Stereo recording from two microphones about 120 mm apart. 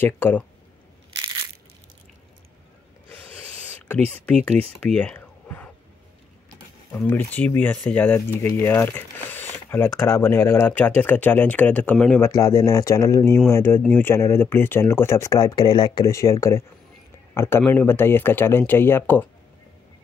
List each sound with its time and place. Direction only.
0.0 s speech: 15° left (ahead or behind)
3.6 s a sound: 15° left (ahead or behind)
4.4 s speech: 5° left (ahead or behind)
7.1 s speech: 15° left (ahead or behind)
12.2 s speech: 25° left (ahead or behind)